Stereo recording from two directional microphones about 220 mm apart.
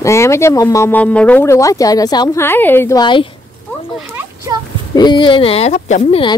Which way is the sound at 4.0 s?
10° right (ahead or behind).